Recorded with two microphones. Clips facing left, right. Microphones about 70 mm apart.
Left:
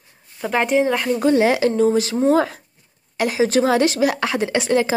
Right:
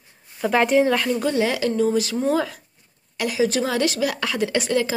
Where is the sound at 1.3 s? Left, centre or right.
Left.